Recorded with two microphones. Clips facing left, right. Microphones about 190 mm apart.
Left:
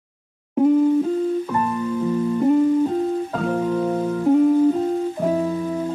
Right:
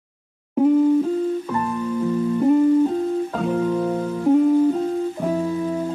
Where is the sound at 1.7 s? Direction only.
10° right (ahead or behind).